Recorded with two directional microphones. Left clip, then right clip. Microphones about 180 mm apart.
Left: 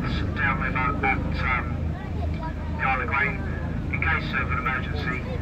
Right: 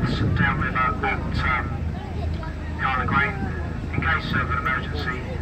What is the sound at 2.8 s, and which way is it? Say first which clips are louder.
Speech: right 2 dB; 25° right (ahead or behind).